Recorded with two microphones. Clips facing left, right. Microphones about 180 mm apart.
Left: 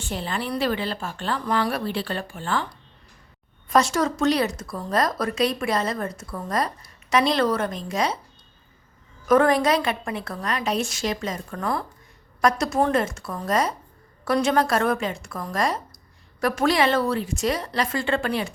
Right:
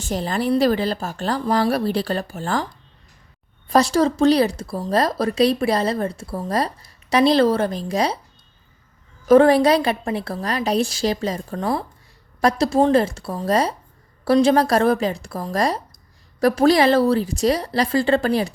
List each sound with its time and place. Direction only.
0.0 s speech: 40° right (ahead or behind)
3.7 s speech: 35° right (ahead or behind)
9.2 s speech: 30° right (ahead or behind)